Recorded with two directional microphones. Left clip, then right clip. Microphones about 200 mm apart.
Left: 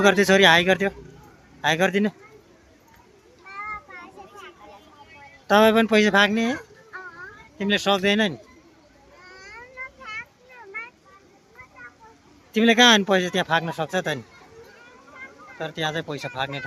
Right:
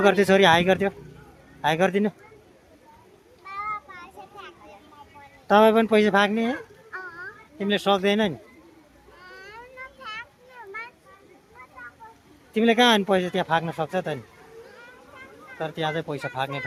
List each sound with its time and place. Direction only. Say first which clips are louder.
0.0 s speech: left 1 dB; centre (ahead or behind)
3.5 s child singing: right 2 dB; 15° right (ahead or behind)
5.5 s speech: even; centre (ahead or behind)
9.3 s a sound: left 1 dB; 5° right (ahead or behind)
12.5 s speech: left 3 dB; centre (ahead or behind)
15.5 s speech: even; 5° right (ahead or behind)